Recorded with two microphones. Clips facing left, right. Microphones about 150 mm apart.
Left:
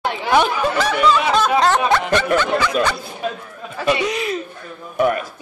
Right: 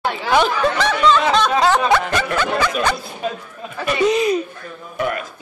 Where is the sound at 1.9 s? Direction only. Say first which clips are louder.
Even; centre (ahead or behind).